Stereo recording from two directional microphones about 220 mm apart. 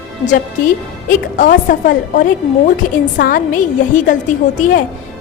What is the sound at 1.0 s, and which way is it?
A woman's voice, 35° left (ahead or behind).